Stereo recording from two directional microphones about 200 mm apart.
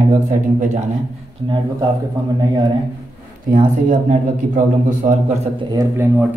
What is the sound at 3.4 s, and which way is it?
A man's voice, 40° right (ahead or behind).